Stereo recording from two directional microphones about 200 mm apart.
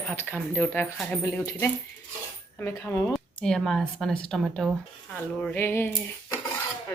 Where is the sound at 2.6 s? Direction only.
15° left (ahead or behind).